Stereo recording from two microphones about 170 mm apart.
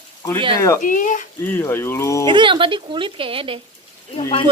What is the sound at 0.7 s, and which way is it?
Speech, 50° left (ahead or behind).